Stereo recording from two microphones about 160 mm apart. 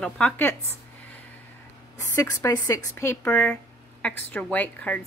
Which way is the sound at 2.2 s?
20° left (ahead or behind).